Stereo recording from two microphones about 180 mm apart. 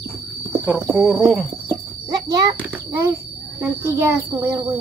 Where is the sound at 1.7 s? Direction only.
20° right (ahead or behind).